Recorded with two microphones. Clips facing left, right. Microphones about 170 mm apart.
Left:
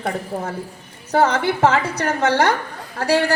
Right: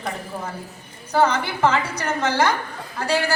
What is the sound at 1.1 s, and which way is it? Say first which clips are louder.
A woman's voice: left 3 dB; 60° left (ahead or behind).